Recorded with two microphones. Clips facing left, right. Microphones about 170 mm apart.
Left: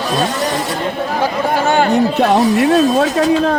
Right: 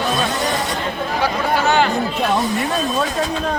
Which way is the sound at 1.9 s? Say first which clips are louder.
Left 7 dB; 70° left (ahead or behind).